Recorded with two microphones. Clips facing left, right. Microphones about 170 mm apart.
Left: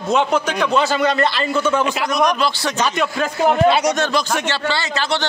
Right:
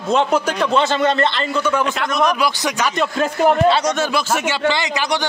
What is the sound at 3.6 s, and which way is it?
Speech, 10° left (ahead or behind).